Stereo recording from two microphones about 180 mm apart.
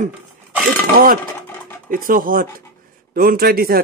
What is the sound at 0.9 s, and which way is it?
Speech, 55° right (ahead or behind).